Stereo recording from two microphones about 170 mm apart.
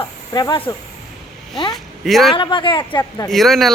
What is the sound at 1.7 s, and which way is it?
Speech, centre (ahead or behind).